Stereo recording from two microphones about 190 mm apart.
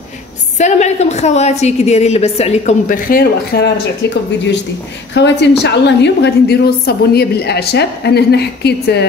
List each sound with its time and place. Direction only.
0.6 s a woman's voice: 40° left (ahead or behind); by 9.0 s 60° left (ahead or behind)